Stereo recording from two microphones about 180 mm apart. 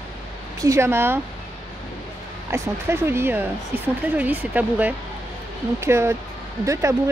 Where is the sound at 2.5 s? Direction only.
15° right (ahead or behind).